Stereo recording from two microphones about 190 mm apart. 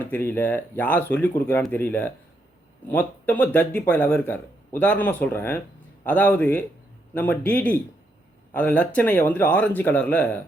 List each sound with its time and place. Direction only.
0.0 s speech: 10° left (ahead or behind)